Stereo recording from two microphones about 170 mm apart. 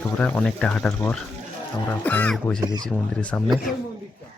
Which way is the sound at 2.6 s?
25° right (ahead or behind).